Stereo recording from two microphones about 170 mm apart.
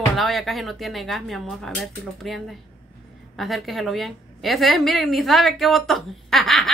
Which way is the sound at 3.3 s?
Centre (ahead or behind).